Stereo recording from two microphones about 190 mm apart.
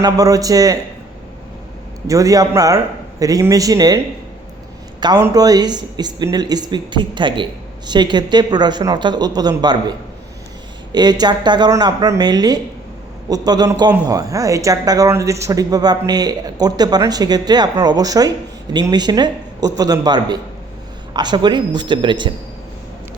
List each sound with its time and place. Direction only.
0.0 s speech: 20° right (ahead or behind)
2.0 s a man's voice: 15° right (ahead or behind)
10.9 s speech: 20° right (ahead or behind)